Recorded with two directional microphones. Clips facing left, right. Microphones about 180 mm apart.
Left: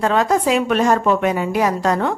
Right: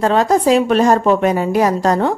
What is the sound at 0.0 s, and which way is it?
A woman's voice, 35° right (ahead or behind).